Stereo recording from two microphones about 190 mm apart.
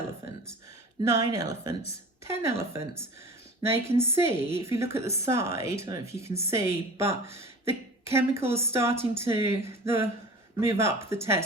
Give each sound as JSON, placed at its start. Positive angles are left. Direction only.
{"t": 1.0, "sound": "a woman's voice", "side_deg": -15}